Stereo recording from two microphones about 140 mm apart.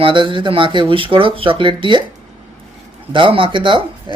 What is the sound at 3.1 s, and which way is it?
Speech, 35° right (ahead or behind).